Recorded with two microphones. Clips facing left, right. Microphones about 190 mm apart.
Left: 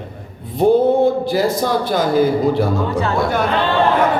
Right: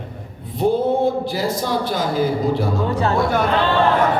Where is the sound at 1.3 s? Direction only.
55° left (ahead or behind).